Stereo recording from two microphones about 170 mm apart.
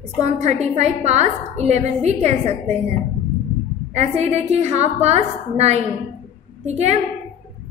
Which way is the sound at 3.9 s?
40° right (ahead or behind).